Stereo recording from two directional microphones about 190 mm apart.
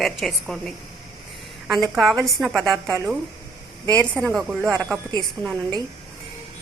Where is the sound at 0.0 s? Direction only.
Centre (ahead or behind).